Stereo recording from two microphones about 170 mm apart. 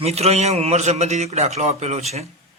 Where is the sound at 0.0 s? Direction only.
40° right (ahead or behind).